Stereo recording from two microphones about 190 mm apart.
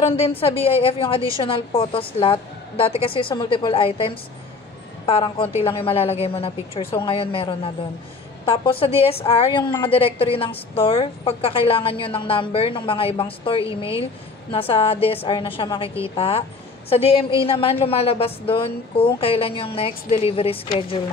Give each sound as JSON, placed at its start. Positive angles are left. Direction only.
{"t": 0.1, "sound": "a woman's voice", "side_deg": 30}